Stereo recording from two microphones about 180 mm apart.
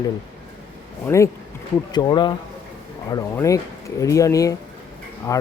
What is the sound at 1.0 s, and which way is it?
Speech, 15° left (ahead or behind).